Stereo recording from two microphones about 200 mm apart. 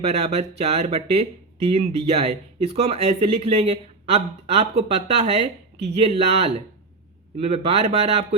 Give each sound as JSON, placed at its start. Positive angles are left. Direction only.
{"t": 0.0, "sound": "speech", "side_deg": -30}